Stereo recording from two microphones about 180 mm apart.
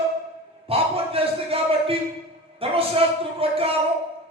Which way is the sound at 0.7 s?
30° right (ahead or behind).